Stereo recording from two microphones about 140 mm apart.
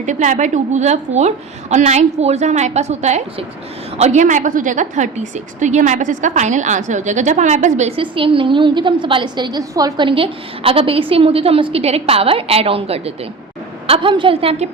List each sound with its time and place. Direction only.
0.0 s a woman's voice: 60° right (ahead or behind)
8.1 s a woman's voice: 40° right (ahead or behind)